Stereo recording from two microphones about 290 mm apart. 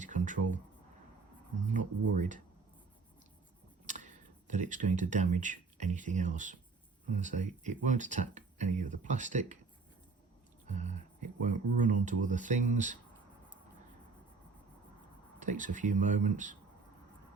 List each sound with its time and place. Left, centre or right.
0.0 s a sound: right
1.7 s speech: right
3.8 s speech: right
10.7 s speech: right
15.4 s speech: right